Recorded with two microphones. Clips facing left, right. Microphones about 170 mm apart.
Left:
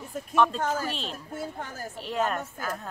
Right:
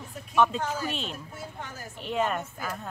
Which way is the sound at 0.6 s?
50° left (ahead or behind).